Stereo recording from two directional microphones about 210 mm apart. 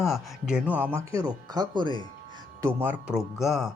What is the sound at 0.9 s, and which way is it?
Speech, 15° right (ahead or behind).